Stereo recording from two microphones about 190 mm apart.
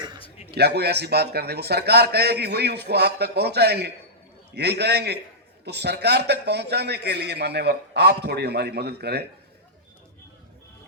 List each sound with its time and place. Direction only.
0.5 s a man's voice: 60° right (ahead or behind)